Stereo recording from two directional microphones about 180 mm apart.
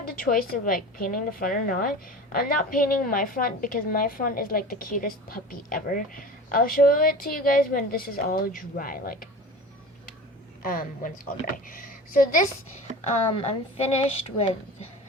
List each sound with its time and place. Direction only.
0.0 s a woman's voice: 55° left (ahead or behind)
10.6 s a woman's voice: 50° left (ahead or behind)
13.1 s a woman's voice: 35° left (ahead or behind)